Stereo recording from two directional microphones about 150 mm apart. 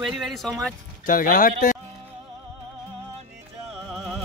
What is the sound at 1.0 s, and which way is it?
Speech, 65° left (ahead or behind).